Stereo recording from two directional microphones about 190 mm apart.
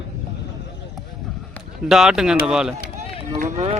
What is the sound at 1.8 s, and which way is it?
Speech, 5° right (ahead or behind).